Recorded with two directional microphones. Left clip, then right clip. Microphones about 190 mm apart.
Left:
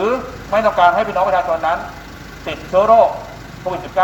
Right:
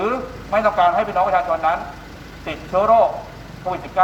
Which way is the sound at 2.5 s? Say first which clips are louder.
Left 4 dB; 20° left (ahead or behind).